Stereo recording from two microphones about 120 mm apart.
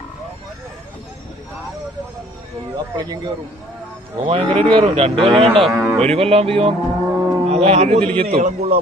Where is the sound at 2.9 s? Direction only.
35° right (ahead or behind).